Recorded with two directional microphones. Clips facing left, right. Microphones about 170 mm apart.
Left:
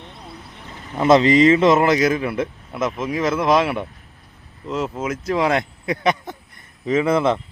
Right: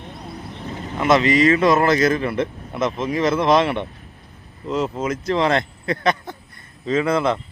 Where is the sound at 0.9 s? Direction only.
30° left (ahead or behind).